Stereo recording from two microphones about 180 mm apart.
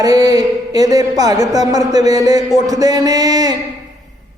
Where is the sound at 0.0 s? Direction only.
20° right (ahead or behind).